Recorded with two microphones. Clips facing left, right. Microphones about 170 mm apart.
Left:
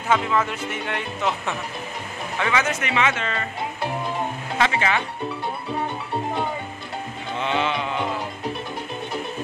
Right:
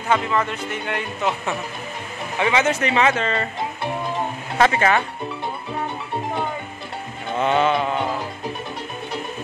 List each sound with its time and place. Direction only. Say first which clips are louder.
0.1 s speech: right 1 dB; centre (ahead or behind)
2.3 s speech: right 4 dB; 20° right (ahead or behind); by 3.4 s 35° right (ahead or behind)
4.6 s speech: right 5 dB; 45° right (ahead or behind)
7.3 s mantra: right 6 dB; 45° right (ahead or behind)